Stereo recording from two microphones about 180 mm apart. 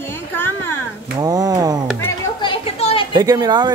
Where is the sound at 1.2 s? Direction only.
20° right (ahead or behind).